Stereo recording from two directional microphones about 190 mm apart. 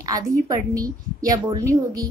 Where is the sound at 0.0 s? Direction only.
20° right (ahead or behind).